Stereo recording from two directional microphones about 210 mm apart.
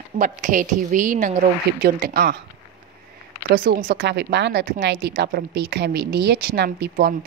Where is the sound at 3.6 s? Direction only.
40° right (ahead or behind).